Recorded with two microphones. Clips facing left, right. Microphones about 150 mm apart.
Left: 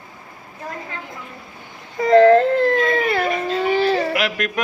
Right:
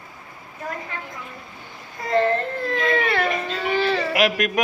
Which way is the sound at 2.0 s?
90° left.